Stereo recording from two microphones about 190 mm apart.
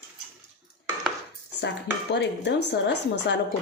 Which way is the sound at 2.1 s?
65° left (ahead or behind).